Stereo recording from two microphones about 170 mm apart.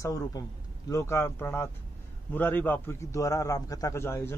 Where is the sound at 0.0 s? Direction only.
20° left (ahead or behind).